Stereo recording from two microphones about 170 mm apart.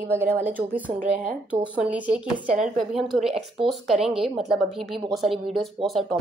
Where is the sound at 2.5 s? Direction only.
45° right (ahead or behind).